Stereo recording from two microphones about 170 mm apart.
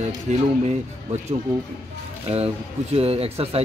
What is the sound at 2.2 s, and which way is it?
Speech, 35° right (ahead or behind).